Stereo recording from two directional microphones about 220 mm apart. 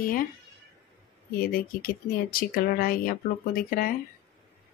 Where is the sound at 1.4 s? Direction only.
40° left (ahead or behind).